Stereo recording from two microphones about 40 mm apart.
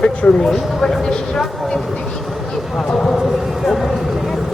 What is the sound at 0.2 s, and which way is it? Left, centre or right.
Speech, left.